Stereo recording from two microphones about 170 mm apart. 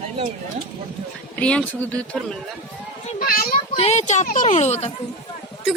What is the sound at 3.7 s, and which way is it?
Speech, 40° left (ahead or behind).